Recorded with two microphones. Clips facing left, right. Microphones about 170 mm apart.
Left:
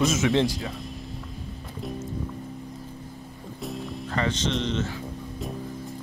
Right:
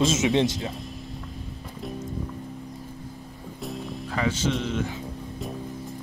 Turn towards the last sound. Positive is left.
turn(degrees=-10)  # may be behind; listen again after turning